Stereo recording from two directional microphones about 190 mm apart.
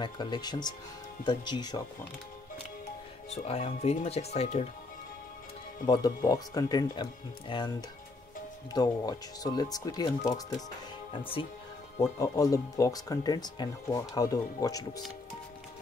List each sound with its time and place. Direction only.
0.0 s speech: 25° left (ahead or behind)
3.3 s speech: 30° left (ahead or behind)
5.9 s speech: 20° left (ahead or behind)
8.7 s speech: 20° left (ahead or behind)
12.0 s speech: 15° left (ahead or behind)